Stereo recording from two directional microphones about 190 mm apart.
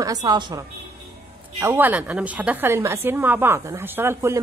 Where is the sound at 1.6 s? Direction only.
10° right (ahead or behind).